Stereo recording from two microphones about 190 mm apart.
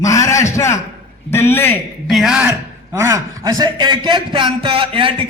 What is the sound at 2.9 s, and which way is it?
A man's voice, 15° right (ahead or behind).